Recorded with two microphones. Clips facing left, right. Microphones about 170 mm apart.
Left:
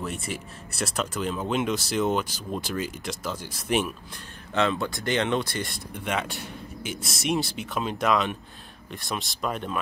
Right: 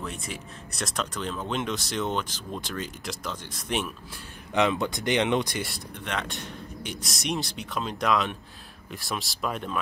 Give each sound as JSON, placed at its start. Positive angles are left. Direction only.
{"t": 0.0, "sound": "speech", "side_deg": 5}
{"t": 4.6, "sound": "speech", "side_deg": -20}
{"t": 5.9, "sound": "speech", "side_deg": 10}